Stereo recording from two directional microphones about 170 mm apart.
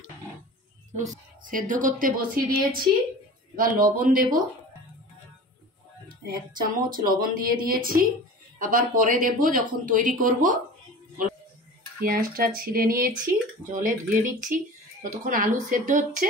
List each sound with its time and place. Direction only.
1.1 s speech: 50° right (ahead or behind)
6.2 s speech: 55° right (ahead or behind)
12.0 s speech: 60° right (ahead or behind)